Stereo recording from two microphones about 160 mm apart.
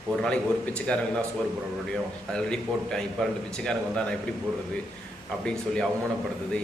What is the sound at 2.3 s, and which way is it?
Speech, 5° left (ahead or behind).